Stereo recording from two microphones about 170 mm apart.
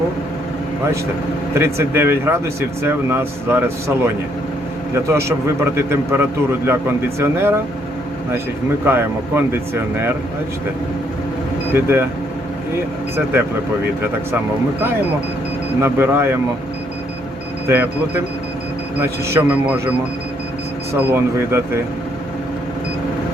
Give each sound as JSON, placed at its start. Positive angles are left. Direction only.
{"t": 1.5, "sound": "speech", "side_deg": -15}
{"t": 8.9, "sound": "speech", "side_deg": -15}
{"t": 11.7, "sound": "speech", "side_deg": -10}
{"t": 15.8, "sound": "speech", "side_deg": -15}
{"t": 17.7, "sound": "speech", "side_deg": -10}
{"t": 20.9, "sound": "speech", "side_deg": -15}